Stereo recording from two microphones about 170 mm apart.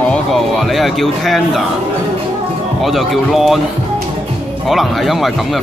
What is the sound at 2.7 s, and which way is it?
Speech, centre (ahead or behind).